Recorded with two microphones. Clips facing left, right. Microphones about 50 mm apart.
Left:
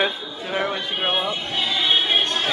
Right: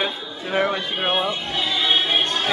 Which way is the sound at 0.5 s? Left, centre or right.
Centre.